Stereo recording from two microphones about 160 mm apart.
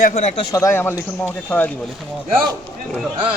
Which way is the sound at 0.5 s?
15° left (ahead or behind).